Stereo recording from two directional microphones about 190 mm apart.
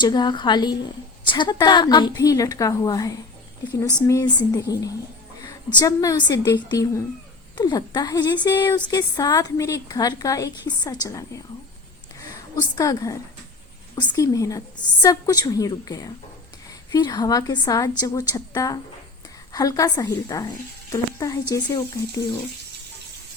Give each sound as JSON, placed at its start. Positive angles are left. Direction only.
{"t": 0.0, "sound": "speech", "side_deg": 25}
{"t": 5.8, "sound": "a woman's voice", "side_deg": 20}
{"t": 12.5, "sound": "a woman's voice", "side_deg": 20}